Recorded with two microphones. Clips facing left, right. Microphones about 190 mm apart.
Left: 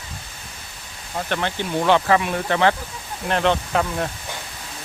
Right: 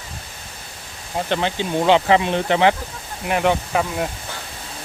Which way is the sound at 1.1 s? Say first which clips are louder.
Right 3 dB; 20° right (ahead or behind).